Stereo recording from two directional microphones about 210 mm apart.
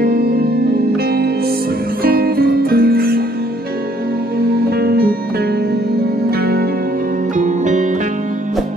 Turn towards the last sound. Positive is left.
turn(degrees=-35)  # may be behind; listen again after turning